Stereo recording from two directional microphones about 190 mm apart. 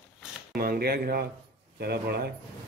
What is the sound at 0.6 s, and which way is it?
A man's voice, 55° right (ahead or behind).